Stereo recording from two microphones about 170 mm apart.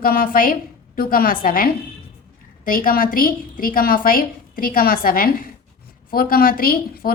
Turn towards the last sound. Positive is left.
turn(degrees=60)  # may be behind; listen again after turning